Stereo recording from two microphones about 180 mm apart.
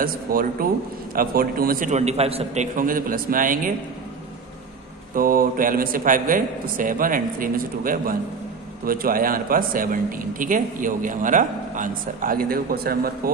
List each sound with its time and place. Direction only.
0.0 s a man's voice: 50° right (ahead or behind)
5.1 s a man's voice: 50° right (ahead or behind)